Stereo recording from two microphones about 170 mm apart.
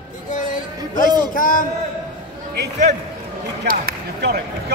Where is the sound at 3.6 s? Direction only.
65° right (ahead or behind).